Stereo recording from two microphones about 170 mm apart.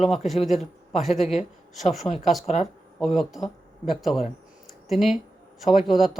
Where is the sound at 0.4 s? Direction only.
Centre (ahead or behind).